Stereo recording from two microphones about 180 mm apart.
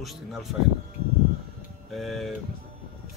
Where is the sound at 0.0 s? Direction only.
Centre (ahead or behind).